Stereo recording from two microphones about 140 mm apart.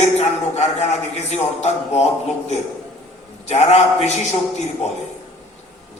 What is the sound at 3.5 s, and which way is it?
Speech, 50° left (ahead or behind).